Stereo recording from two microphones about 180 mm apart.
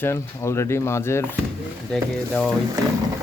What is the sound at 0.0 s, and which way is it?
Speech, 15° left (ahead or behind).